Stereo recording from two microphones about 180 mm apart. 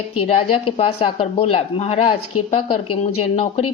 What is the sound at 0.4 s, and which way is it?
A woman's voice, 30° left (ahead or behind).